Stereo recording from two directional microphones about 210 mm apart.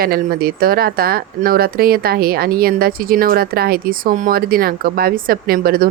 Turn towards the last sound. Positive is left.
turn(degrees=-45)  # may be behind; listen again after turning